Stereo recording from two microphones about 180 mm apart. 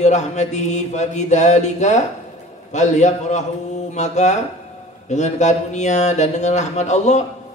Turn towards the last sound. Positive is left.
turn(degrees=40)  # may be behind; listen again after turning